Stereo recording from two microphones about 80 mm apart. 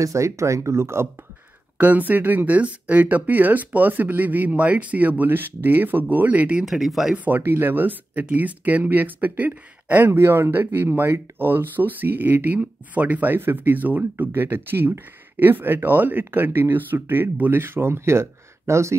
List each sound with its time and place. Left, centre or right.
0.0 s speech: right
1.8 s speech: centre
6.6 s speech: centre
7.2 s speech: right